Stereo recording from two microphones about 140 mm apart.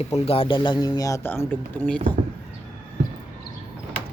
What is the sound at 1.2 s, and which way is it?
Speech, 15° left (ahead or behind).